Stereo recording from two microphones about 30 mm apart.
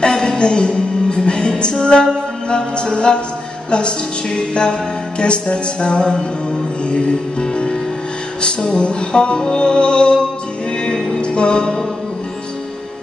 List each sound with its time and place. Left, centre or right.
0.0 s music: left
11.1 s music: left